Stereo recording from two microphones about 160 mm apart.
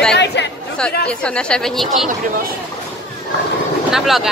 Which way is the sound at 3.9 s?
Centre (ahead or behind).